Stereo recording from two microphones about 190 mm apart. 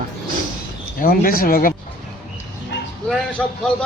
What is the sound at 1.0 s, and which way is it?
Speech, 50° left (ahead or behind).